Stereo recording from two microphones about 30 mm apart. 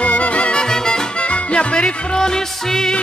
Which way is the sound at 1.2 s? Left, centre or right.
Left.